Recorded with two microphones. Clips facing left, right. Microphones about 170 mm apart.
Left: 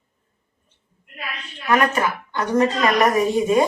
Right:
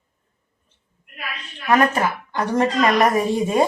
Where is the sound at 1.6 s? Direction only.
30° right (ahead or behind).